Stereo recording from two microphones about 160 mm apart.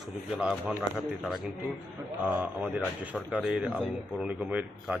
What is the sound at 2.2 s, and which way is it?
Speech, 10° right (ahead or behind).